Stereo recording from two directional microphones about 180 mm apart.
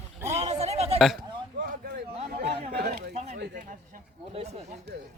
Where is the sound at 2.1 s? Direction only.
40° right (ahead or behind).